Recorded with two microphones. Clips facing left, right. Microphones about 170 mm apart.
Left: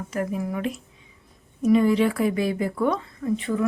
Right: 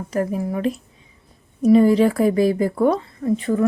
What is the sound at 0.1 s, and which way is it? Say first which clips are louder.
A woman's voice: right 5 dB; 35° right (ahead or behind).